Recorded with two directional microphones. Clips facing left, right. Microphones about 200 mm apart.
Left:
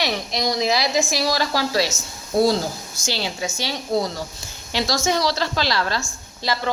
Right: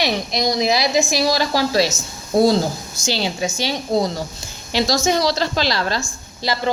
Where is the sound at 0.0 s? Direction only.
15° right (ahead or behind).